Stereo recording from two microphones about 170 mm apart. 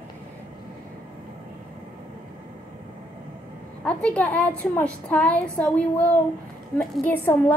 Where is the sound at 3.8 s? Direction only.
5° left (ahead or behind).